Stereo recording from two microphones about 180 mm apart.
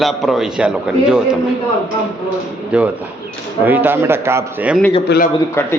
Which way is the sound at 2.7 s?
5° right (ahead or behind).